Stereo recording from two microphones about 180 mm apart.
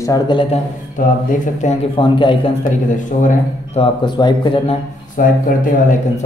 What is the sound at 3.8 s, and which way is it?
Speech, 30° left (ahead or behind).